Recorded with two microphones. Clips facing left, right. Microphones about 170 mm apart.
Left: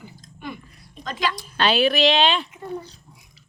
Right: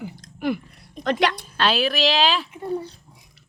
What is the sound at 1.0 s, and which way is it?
Speech, 65° right (ahead or behind).